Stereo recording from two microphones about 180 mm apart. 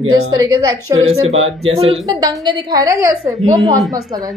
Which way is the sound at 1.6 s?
35° right (ahead or behind).